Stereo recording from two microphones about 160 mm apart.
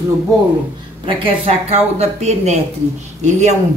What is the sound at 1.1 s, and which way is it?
Speech, 40° right (ahead or behind).